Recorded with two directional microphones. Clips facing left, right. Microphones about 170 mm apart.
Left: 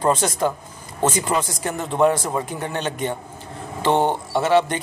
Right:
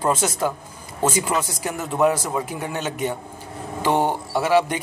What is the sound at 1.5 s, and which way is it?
Speech, 10° right (ahead or behind).